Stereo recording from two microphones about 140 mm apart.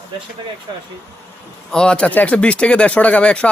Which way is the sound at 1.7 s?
5° left (ahead or behind).